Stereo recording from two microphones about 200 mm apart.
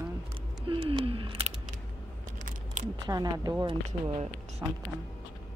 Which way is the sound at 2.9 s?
20° right (ahead or behind).